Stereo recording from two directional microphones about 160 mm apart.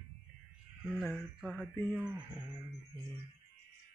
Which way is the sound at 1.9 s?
15° right (ahead or behind).